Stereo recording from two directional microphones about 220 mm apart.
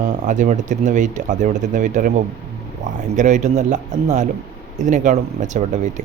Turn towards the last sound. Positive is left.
turn(degrees=-30)  # may be behind; listen again after turning